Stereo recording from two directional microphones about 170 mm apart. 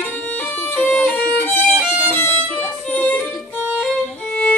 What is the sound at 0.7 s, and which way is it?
Violin, 10° left (ahead or behind).